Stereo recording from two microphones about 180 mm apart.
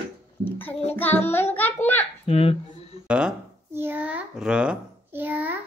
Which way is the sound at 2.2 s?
30° left (ahead or behind).